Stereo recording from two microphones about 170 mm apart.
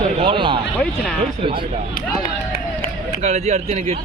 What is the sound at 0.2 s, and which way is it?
Speech, 30° right (ahead or behind).